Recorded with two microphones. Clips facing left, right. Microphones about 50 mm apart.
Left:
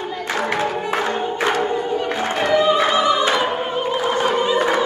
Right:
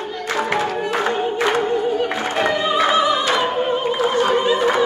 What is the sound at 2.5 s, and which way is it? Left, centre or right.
Music, centre.